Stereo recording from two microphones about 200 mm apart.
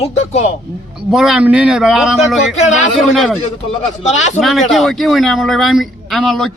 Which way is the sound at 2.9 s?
Centre (ahead or behind).